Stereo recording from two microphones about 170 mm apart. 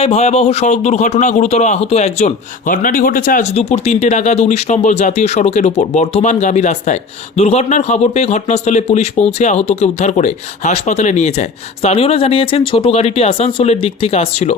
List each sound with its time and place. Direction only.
0.0 s a man's voice: 40° left (ahead or behind)